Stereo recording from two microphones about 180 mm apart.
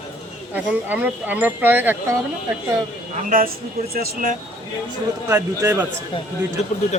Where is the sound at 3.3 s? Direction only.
50° right (ahead or behind).